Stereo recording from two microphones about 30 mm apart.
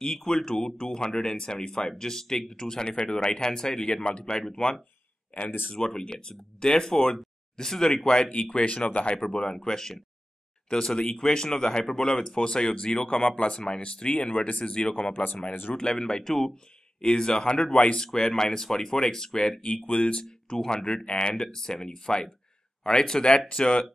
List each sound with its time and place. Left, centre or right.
0.0 s speech: centre
4.0 s speech: left
5.8 s speech: centre
8.0 s speech: left
8.5 s speech: left
9.3 s speech: left
17.9 s speech: left
19.9 s speech: left
20.5 s speech: centre
20.8 s speech: left